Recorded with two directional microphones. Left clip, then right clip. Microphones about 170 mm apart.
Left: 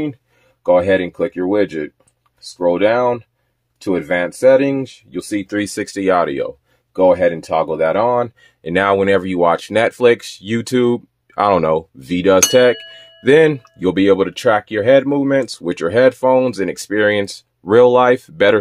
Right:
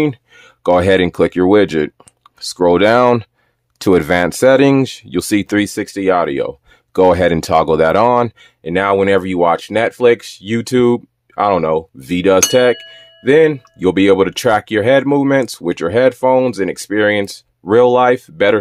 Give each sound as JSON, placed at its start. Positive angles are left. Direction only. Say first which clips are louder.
{"t": 0.0, "sound": "speech", "louder": "right 7 dB", "side_deg": -45}
{"t": 3.8, "sound": "speech", "louder": "right 5 dB", "side_deg": -55}
{"t": 5.6, "sound": "speech", "louder": "right 3 dB", "side_deg": -15}
{"t": 6.9, "sound": "speech", "louder": "right 2 dB", "side_deg": -50}
{"t": 8.6, "sound": "speech", "louder": "right 1 dB", "side_deg": -10}
{"t": 11.3, "sound": "a sound", "louder": "even", "side_deg": 0}
{"t": 12.0, "sound": "speech", "louder": "right 1 dB", "side_deg": -10}
{"t": 12.4, "sound": "a sound", "louder": "left 1 dB", "side_deg": -5}
{"t": 13.7, "sound": "speech", "louder": "right 3 dB", "side_deg": -15}